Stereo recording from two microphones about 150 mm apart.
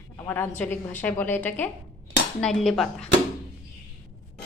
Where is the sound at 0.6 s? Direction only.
10° left (ahead or behind).